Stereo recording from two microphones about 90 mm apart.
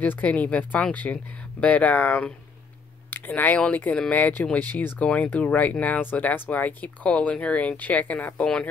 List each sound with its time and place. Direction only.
0.0 s speech: 15° left (ahead or behind)